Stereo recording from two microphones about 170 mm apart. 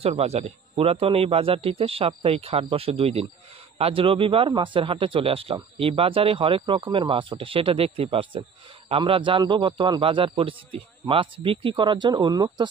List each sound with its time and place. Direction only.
0.0 s a man's voice: 40° right (ahead or behind)